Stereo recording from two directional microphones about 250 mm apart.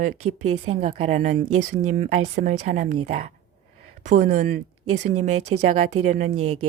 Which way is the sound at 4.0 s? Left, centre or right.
Right.